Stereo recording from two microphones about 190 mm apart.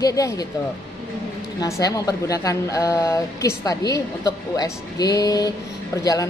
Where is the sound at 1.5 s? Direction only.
15° left (ahead or behind).